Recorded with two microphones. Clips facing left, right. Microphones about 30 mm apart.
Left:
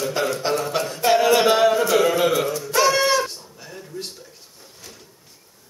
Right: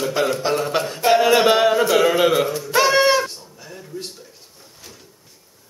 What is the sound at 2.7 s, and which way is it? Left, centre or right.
Goat, centre.